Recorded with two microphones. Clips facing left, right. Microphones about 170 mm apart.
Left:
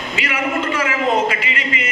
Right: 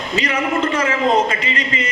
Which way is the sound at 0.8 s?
35° right (ahead or behind).